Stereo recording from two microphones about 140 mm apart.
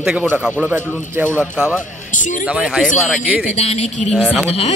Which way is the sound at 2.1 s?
65° left (ahead or behind).